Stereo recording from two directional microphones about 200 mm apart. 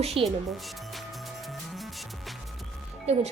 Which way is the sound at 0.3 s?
Centre (ahead or behind).